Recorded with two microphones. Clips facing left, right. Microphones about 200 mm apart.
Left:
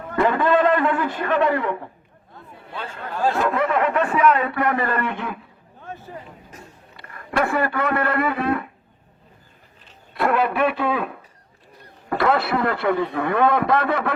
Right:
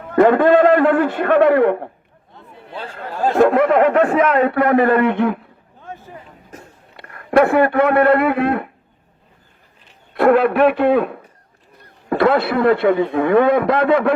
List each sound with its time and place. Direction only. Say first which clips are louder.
0.2 s speech: right 7 dB; 55° right (ahead or behind)
2.3 s a sound: right 3 dB; 30° right (ahead or behind)
3.2 s speech: right 8 dB; 55° right (ahead or behind)
5.9 s vehicle: right 1 dB; 15° right (ahead or behind)
6.5 s a man's voice: right 3 dB; 55° right (ahead or behind)
10.2 s speech: right 7 dB; 55° right (ahead or behind)